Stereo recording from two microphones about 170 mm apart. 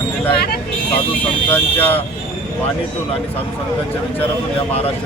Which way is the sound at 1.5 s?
10° left (ahead or behind).